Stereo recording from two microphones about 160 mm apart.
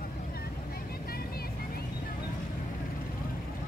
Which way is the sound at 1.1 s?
70° left (ahead or behind).